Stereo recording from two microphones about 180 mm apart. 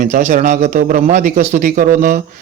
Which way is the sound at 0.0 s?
45° right (ahead or behind).